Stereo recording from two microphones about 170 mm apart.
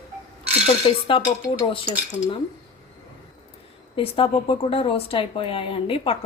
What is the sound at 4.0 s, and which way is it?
Speech, 30° left (ahead or behind).